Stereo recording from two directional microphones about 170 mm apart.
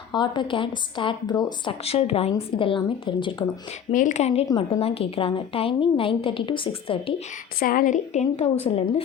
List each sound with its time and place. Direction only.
0.1 s speech: 25° left (ahead or behind)
3.9 s a woman's voice: 45° left (ahead or behind)
4.4 s speech: 25° left (ahead or behind)
4.8 s a woman's voice: 35° left (ahead or behind)
7.6 s a woman's voice: 55° left (ahead or behind); by 9.0 s 35° left (ahead or behind)